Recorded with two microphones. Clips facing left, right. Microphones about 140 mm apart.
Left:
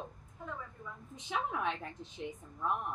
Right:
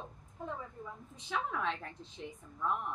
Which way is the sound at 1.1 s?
15° left (ahead or behind).